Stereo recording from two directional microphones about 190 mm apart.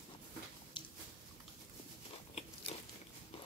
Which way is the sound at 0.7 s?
25° left (ahead or behind).